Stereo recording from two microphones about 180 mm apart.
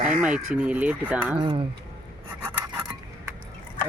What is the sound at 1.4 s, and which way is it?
Speech, 30° right (ahead or behind).